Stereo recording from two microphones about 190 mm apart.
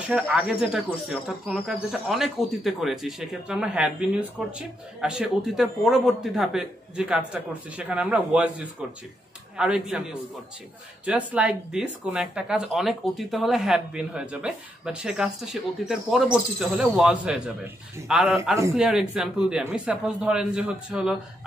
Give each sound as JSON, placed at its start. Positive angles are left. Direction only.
{"t": 0.0, "sound": "speech", "side_deg": -5}
{"t": 11.1, "sound": "speech", "side_deg": -5}